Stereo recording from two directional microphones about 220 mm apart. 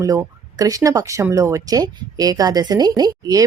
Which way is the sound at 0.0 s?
15° right (ahead or behind).